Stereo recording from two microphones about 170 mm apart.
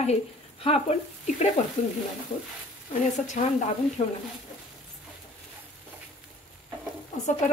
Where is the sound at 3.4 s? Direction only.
50° left (ahead or behind).